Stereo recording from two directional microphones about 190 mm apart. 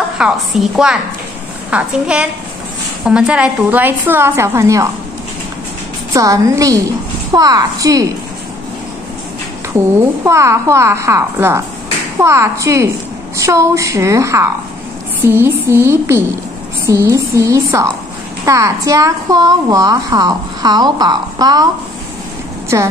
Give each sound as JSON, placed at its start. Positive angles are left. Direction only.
{"t": 0.2, "sound": "a woman's voice", "side_deg": -5}
{"t": 6.1, "sound": "a woman's voice", "side_deg": -15}
{"t": 10.2, "sound": "a woman's voice", "side_deg": -15}
{"t": 22.7, "sound": "a woman's voice", "side_deg": -15}